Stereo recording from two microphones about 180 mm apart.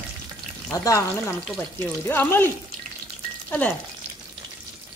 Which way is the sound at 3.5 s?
10° left (ahead or behind).